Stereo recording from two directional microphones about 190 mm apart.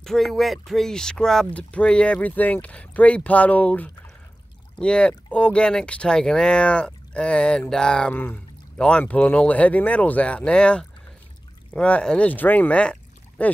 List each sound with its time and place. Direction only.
0.0 s speech: centre (ahead or behind)